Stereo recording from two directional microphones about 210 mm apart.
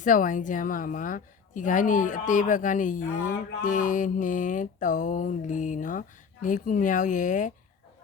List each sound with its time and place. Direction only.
0.0 s a woman's voice: 40° left (ahead or behind)